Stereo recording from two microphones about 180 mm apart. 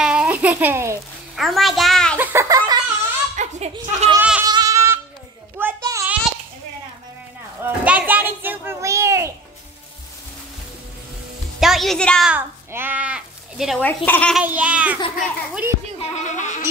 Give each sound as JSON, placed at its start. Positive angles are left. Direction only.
{"t": 0.0, "sound": "a sound", "side_deg": -5}
{"t": 1.3, "sound": "a child's voice", "side_deg": 0}
{"t": 2.1, "sound": "a sound", "side_deg": -15}
{"t": 3.3, "sound": "chuckle", "side_deg": -40}
{"t": 4.2, "sound": "goat", "side_deg": -10}
{"t": 4.5, "sound": "goat", "side_deg": -20}
{"t": 5.6, "sound": "a sound", "side_deg": -15}
{"t": 7.6, "sound": "a sound", "side_deg": -5}
{"t": 11.6, "sound": "a woman's voice", "side_deg": 0}
{"t": 12.3, "sound": "a child's voice", "side_deg": -10}
{"t": 13.7, "sound": "speech", "side_deg": 10}
{"t": 14.3, "sound": "babbling", "side_deg": -10}
{"t": 16.0, "sound": "speech", "side_deg": 40}